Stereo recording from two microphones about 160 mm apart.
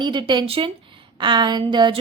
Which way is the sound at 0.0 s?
30° right (ahead or behind).